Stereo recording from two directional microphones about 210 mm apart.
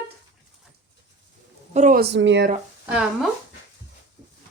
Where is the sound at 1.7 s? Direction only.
35° right (ahead or behind); by 2.5 s 60° right (ahead or behind).